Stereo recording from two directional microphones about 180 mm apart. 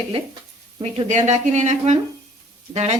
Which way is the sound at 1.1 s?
40° right (ahead or behind).